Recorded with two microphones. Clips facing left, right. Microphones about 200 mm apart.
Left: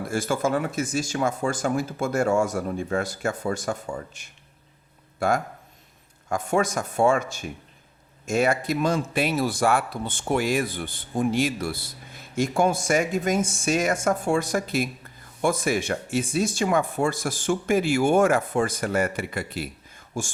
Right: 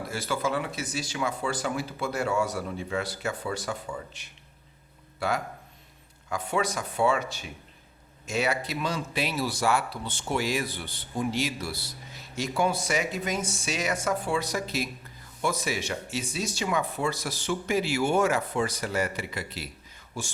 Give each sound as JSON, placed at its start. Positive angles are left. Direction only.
{"t": 0.0, "sound": "speech", "side_deg": 50}